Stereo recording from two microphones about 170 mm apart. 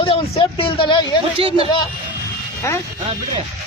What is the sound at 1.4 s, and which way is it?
Speech, 35° right (ahead or behind).